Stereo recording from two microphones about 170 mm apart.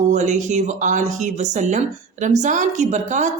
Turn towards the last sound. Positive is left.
turn(degrees=-45)  # may be behind; listen again after turning